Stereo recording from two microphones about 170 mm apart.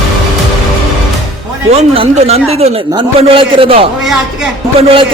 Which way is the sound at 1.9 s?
35° right (ahead or behind).